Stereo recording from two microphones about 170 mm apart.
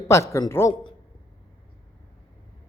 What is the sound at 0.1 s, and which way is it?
Speech, 15° left (ahead or behind).